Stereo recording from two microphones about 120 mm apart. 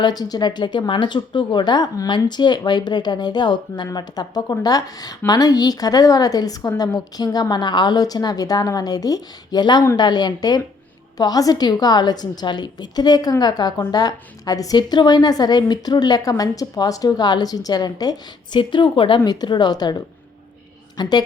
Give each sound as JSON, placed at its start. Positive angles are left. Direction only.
{"t": 0.0, "sound": "a woman's voice", "side_deg": 35}